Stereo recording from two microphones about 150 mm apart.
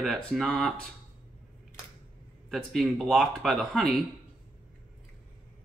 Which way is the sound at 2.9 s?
Centre (ahead or behind).